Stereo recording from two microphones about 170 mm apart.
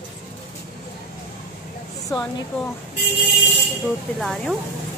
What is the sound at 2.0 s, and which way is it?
Speech, 20° left (ahead or behind).